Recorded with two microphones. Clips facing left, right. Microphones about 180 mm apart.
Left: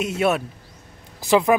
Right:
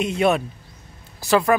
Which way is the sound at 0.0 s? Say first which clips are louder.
Right 2 dB; 5° left (ahead or behind).